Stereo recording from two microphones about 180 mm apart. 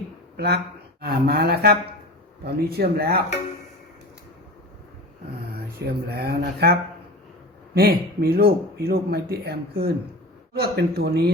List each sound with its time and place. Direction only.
0.3 s speech: 65° right (ahead or behind)
5.5 s speech: 60° right (ahead or behind)